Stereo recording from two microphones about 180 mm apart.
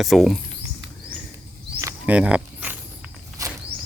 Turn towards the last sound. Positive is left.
turn(degrees=-15)  # may be behind; listen again after turning